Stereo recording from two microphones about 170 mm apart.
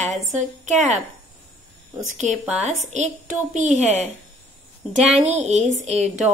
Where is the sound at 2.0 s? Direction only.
45° right (ahead or behind).